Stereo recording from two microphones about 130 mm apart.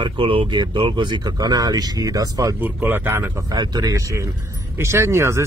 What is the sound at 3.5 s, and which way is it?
Speech, 30° right (ahead or behind).